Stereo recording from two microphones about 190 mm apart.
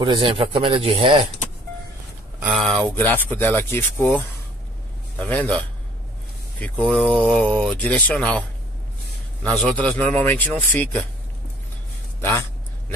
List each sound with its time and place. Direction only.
0.0 s speech: 25° right (ahead or behind)
2.4 s speech: centre (ahead or behind)
5.2 s speech: 10° left (ahead or behind)
9.4 s speech: 5° left (ahead or behind)
12.2 s speech: 15° left (ahead or behind)